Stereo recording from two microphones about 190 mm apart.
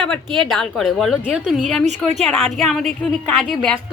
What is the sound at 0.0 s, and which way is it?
A woman's voice, centre (ahead or behind).